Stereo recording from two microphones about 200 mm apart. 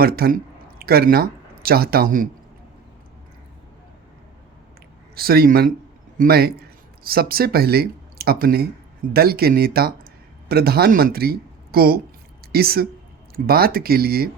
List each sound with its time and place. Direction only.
0.0 s speech: 50° right (ahead or behind)
5.1 s speech: 50° right (ahead or behind)